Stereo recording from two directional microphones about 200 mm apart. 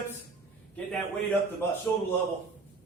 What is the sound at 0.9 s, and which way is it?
Speech, 10° left (ahead or behind).